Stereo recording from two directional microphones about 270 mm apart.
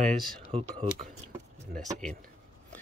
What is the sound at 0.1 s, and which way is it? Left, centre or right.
Speech, centre.